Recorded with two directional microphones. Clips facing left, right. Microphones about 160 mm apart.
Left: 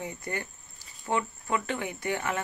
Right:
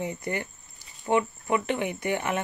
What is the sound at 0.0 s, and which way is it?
Speech, 20° right (ahead or behind).